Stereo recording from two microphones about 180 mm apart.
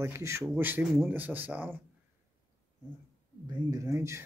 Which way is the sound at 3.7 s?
20° right (ahead or behind).